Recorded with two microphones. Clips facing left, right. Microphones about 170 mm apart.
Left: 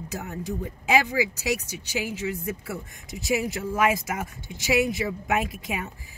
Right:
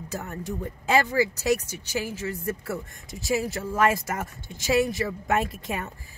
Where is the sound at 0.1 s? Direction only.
10° left (ahead or behind).